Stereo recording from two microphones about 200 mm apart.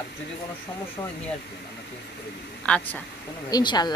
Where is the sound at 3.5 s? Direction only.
20° left (ahead or behind).